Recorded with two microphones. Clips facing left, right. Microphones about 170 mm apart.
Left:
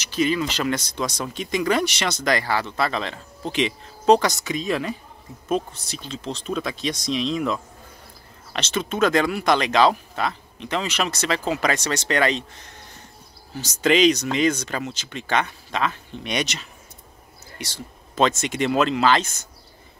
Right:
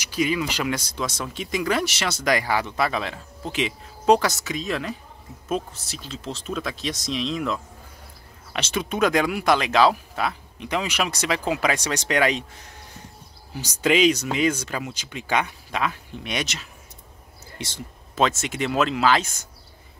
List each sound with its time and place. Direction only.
0.0 s speech: 10° right (ahead or behind)
8.5 s speech: 10° right (ahead or behind)
17.6 s speech: 25° right (ahead or behind)
18.1 s speech: 5° right (ahead or behind)